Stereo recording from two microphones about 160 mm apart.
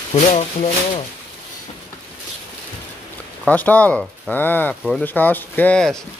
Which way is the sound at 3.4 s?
10° left (ahead or behind).